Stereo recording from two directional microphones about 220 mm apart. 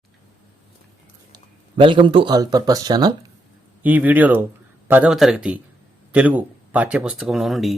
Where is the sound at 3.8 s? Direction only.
5° right (ahead or behind).